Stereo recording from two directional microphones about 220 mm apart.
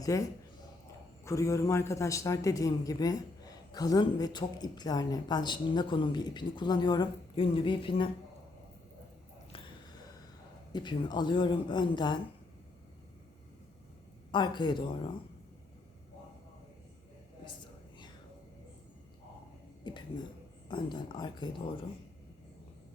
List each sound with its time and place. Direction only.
0.0 s a man's voice: 15° left (ahead or behind)
10.7 s speech: 20° left (ahead or behind)
14.3 s speech: 20° left (ahead or behind)
19.8 s a sound: 20° left (ahead or behind)
20.7 s speech: 20° left (ahead or behind)